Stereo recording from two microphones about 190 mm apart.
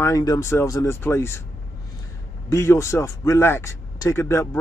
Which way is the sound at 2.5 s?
15° left (ahead or behind).